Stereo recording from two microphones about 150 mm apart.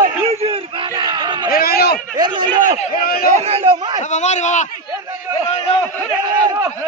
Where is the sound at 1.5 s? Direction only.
85° left.